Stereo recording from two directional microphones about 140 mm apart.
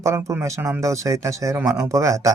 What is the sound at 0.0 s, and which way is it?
Speech, 20° right (ahead or behind).